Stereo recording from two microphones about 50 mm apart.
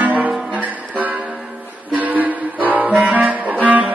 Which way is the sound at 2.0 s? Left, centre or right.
Right.